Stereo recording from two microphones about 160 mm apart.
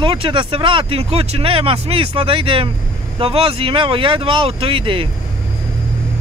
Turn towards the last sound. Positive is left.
turn(degrees=-35)  # may be behind; listen again after turning